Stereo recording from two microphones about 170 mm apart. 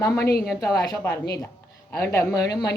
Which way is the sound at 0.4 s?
Centre (ahead or behind).